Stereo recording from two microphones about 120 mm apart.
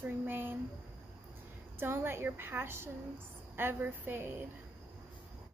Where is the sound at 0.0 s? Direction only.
15° right (ahead or behind).